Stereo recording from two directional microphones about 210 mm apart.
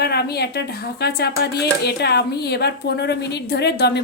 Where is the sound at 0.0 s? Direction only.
50° left (ahead or behind).